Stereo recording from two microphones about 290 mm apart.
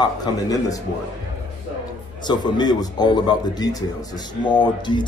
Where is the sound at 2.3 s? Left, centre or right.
Centre.